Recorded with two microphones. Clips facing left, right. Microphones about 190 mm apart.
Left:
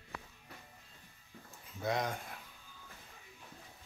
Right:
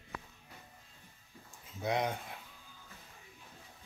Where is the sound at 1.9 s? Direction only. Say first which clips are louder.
Right 2 dB; 20° right (ahead or behind).